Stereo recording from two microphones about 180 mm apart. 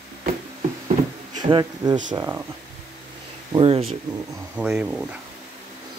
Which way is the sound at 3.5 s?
30° right (ahead or behind).